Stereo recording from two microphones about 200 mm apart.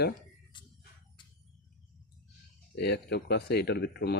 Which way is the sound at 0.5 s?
25° left (ahead or behind).